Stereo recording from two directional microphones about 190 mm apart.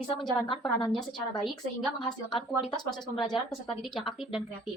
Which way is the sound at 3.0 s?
20° left (ahead or behind).